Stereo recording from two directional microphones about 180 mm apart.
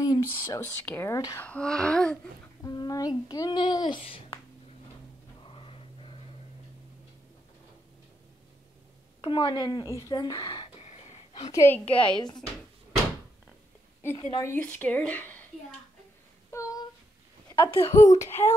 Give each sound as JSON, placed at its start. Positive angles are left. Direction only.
{"t": 0.0, "sound": "speech", "side_deg": 20}
{"t": 1.4, "sound": "female singing", "side_deg": 5}
{"t": 2.6, "sound": "speech", "side_deg": 20}
{"t": 5.4, "sound": "dog", "side_deg": 30}
{"t": 9.2, "sound": "speech", "side_deg": 25}
{"t": 10.8, "sound": "a sound", "side_deg": 35}
{"t": 11.5, "sound": "speech", "side_deg": 10}
{"t": 14.1, "sound": "speech", "side_deg": 25}
{"t": 14.4, "sound": "speech", "side_deg": 10}
{"t": 16.4, "sound": "a sound", "side_deg": 15}
{"t": 17.5, "sound": "speech", "side_deg": 30}